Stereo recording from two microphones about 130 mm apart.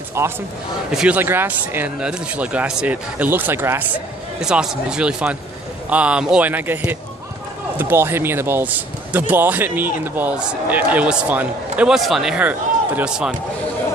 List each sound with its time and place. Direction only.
0.2 s a man's voice: 20° right (ahead or behind)
4.4 s speech: 5° right (ahead or behind)